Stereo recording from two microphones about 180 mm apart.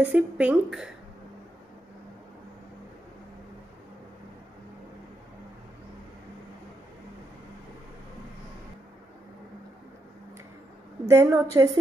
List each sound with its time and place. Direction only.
0.0 s speech: 10° right (ahead or behind)
11.1 s speech: 15° right (ahead or behind)